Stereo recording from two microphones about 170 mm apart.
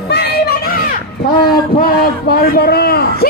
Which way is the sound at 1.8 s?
60° left (ahead or behind).